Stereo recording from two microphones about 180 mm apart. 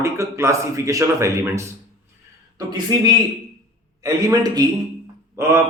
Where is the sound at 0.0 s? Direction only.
15° right (ahead or behind).